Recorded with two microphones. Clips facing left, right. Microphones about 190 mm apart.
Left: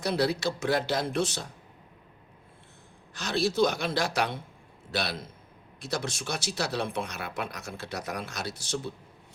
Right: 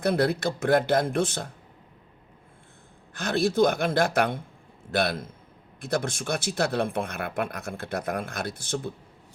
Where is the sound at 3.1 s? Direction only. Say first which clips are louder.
Right 4 dB; 55° right (ahead or behind).